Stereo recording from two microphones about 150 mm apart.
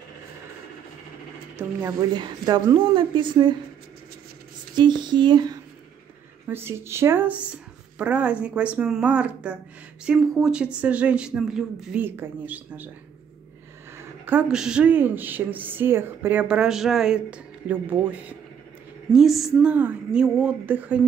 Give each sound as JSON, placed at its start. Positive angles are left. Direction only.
{"t": 1.9, "sound": "a woman's voice", "side_deg": -25}
{"t": 4.7, "sound": "speech", "side_deg": -30}
{"t": 6.4, "sound": "speech", "side_deg": -15}
{"t": 13.9, "sound": "speech", "side_deg": -15}
{"t": 19.1, "sound": "speech", "side_deg": 0}